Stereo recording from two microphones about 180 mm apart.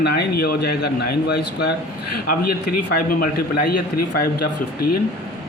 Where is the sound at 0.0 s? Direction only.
65° left (ahead or behind).